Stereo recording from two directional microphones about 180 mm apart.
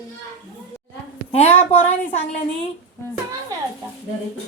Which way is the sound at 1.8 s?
35° left (ahead or behind).